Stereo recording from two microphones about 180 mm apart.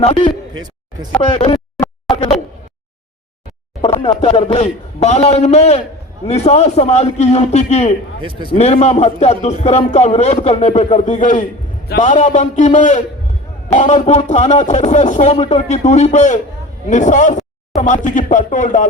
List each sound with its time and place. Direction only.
0.0 s a man's voice: 30° left (ahead or behind)
0.5 s a sound: 20° right (ahead or behind)
1.2 s a man's voice: 35° left (ahead or behind)
2.1 s a sound: centre (ahead or behind)
4.2 s a man's voice: 30° left (ahead or behind)
8.2 s speech: 25° right (ahead or behind)
8.4 s a man's voice: 35° left (ahead or behind)